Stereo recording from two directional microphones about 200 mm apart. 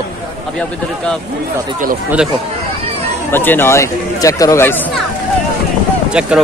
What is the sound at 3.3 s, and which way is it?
Speech, 10° left (ahead or behind).